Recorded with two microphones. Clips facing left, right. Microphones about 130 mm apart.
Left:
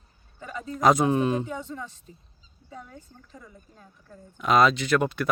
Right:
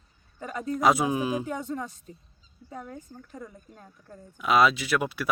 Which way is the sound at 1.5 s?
45° right (ahead or behind).